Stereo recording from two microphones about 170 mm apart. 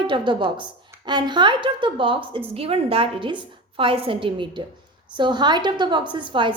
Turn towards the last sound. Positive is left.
turn(degrees=-30)  # may be behind; listen again after turning